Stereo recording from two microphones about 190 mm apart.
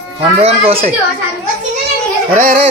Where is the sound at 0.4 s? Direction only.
30° right (ahead or behind).